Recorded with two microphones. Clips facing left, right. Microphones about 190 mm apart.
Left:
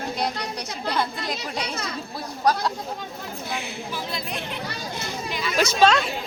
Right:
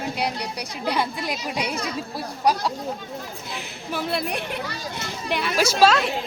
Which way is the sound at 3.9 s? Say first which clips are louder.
Right 8 dB; 65° right (ahead or behind).